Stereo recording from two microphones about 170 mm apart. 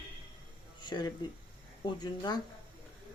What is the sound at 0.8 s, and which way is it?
Speech, 25° left (ahead or behind).